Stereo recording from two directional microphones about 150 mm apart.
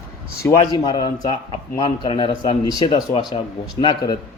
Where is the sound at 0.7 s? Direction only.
30° left (ahead or behind).